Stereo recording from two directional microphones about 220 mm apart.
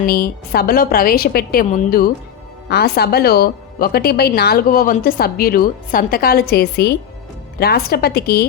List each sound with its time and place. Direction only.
0.0 s speech: 45° left (ahead or behind)